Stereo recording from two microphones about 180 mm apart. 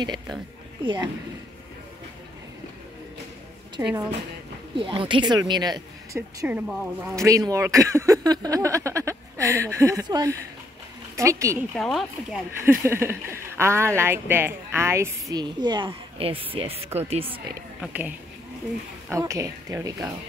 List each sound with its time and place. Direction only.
0.8 s speech: 20° right (ahead or behind)
3.8 s speech: 15° right (ahead or behind)
4.7 s speech: 30° right (ahead or behind)
6.4 s speech: 5° right (ahead or behind)
7.2 s speech: 20° right (ahead or behind)
11.7 s speech: centre (ahead or behind)
12.6 s speech: 15° right (ahead or behind); by 17.6 s 30° right (ahead or behind)
17.7 s speech: 10° right (ahead or behind)